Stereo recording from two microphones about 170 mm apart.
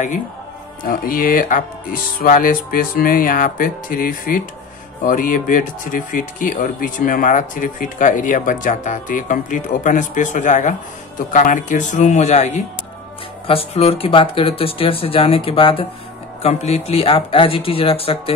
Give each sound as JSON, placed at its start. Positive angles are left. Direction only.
{"t": 0.8, "sound": "speech", "side_deg": 55}